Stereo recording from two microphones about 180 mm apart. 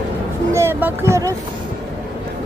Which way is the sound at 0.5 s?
15° right (ahead or behind).